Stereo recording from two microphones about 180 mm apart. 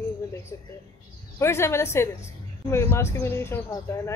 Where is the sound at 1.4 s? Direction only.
15° left (ahead or behind).